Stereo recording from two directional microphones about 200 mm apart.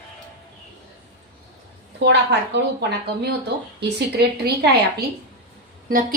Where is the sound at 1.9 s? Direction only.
60° right (ahead or behind).